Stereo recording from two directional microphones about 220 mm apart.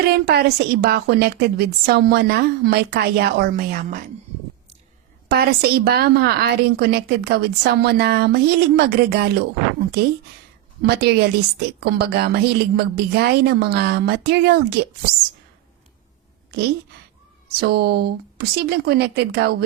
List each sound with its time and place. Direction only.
0.1 s a woman's voice: 45° right (ahead or behind)
5.3 s a woman's voice: 45° right (ahead or behind)
10.8 s a woman's voice: 50° right (ahead or behind)
16.5 s a woman's voice: 45° right (ahead or behind)